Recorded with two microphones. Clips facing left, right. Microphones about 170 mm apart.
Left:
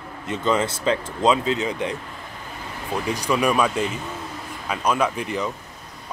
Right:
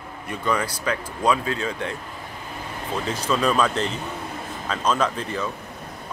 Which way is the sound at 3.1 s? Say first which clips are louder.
Left 1 dB; 15° left (ahead or behind).